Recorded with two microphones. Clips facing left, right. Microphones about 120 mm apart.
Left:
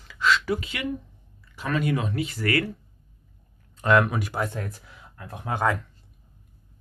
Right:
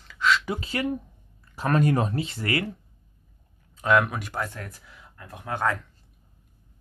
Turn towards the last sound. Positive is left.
turn(degrees=10)  # may be behind; listen again after turning